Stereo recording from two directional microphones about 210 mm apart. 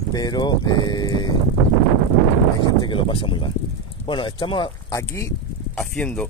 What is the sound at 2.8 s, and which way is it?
Speech, 25° left (ahead or behind).